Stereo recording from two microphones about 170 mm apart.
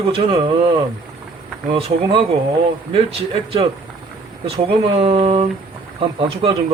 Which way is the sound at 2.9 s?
35° right (ahead or behind).